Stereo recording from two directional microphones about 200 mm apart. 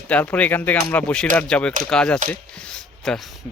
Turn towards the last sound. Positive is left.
turn(degrees=5)  # may be behind; listen again after turning